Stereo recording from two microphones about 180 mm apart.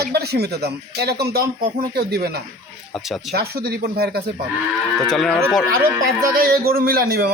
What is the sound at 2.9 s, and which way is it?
Speech, centre (ahead or behind).